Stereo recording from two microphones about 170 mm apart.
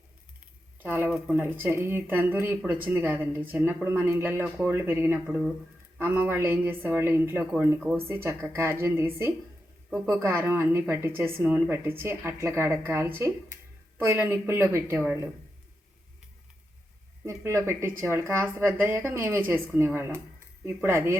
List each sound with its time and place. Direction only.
0.8 s speech: 10° right (ahead or behind)
17.2 s speech: 15° right (ahead or behind)